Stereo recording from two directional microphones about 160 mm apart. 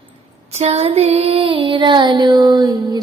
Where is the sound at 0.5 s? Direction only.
40° right (ahead or behind).